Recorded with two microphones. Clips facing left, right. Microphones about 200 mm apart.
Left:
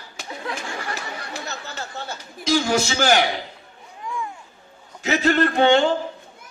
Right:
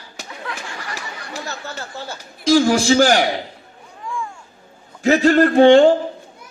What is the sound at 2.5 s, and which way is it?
Speech, 40° right (ahead or behind).